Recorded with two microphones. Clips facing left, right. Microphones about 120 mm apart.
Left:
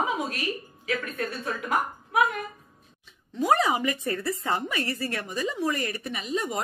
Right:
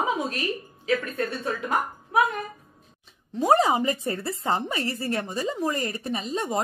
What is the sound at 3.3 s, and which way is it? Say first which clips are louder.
A woman's voice: right 3 dB; 30° right (ahead or behind).